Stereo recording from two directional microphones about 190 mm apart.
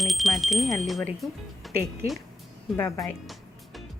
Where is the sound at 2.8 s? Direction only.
15° left (ahead or behind).